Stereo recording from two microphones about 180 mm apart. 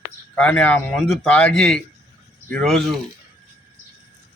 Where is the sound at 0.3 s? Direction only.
5° left (ahead or behind).